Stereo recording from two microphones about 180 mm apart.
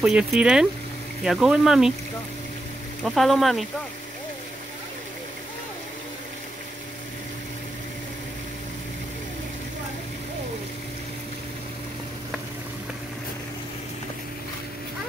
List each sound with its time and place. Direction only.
0.0 s speech: 5° right (ahead or behind)
3.0 s speech: centre (ahead or behind)